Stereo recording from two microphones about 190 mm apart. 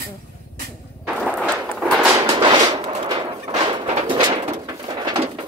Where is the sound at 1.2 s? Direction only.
5° left (ahead or behind).